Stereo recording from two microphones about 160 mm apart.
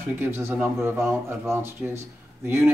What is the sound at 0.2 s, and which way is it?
Speech, 15° right (ahead or behind).